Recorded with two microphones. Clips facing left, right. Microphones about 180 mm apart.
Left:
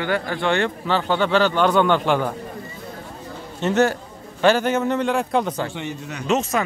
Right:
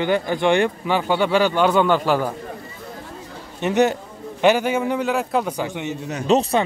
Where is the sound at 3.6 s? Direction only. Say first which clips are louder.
Right 1 dB; 15° right (ahead or behind).